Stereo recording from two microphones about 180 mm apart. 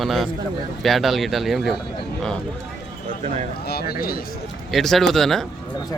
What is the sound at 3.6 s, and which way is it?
Speech, 60° left (ahead or behind).